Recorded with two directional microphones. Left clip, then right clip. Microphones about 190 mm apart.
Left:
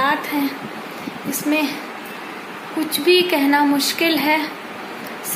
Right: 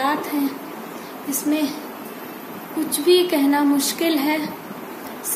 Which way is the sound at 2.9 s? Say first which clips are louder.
Left 1 dB; 5° right (ahead or behind).